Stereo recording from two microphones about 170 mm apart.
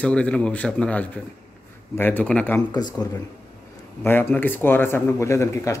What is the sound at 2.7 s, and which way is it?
Speech, 25° left (ahead or behind).